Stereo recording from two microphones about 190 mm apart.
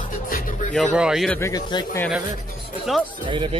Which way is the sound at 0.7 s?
Centre (ahead or behind).